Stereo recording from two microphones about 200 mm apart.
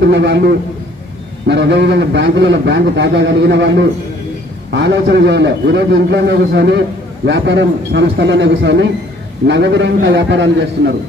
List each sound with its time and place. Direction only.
0.0 s a man's voice: 60° right (ahead or behind)